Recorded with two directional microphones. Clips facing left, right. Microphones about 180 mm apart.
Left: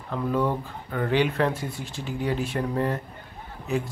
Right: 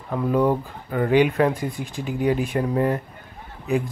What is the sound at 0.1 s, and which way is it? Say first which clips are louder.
Speech: right 5 dB; 15° right (ahead or behind).